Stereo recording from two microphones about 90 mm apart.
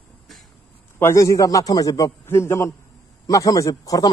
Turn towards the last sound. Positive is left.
turn(degrees=40)  # may be behind; listen again after turning